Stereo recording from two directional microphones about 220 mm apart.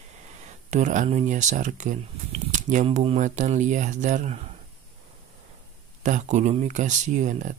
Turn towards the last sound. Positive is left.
turn(degrees=-35)  # may be behind; listen again after turning